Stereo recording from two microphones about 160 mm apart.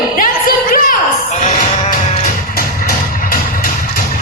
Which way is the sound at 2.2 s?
65° left (ahead or behind).